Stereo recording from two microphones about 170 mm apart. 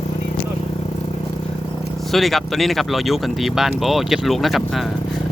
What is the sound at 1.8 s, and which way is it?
Speech, centre (ahead or behind).